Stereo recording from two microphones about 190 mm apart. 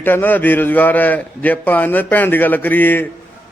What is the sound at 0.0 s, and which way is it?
A man's voice, 10° left (ahead or behind).